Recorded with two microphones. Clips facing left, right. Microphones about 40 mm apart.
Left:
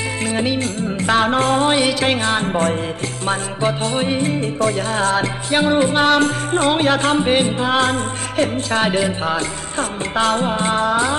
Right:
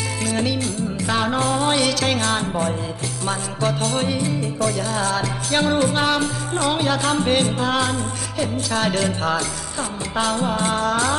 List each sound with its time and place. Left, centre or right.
0.2 s music: left
0.6 s music: left
1.7 s music: left
2.5 s music: left
3.3 s music: left
4.2 s music: left
5.5 s music: centre
6.1 s music: left
7.2 s music: left
7.8 s music: left
8.8 s music: centre
10.1 s music: left
10.4 s music: left